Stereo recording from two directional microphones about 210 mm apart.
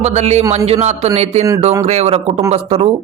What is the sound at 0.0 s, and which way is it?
Speech, 30° right (ahead or behind).